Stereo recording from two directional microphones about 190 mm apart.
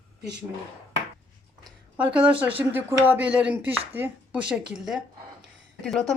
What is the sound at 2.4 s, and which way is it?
Speech, 10° right (ahead or behind).